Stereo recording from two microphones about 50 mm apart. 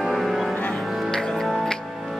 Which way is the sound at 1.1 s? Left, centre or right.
Centre.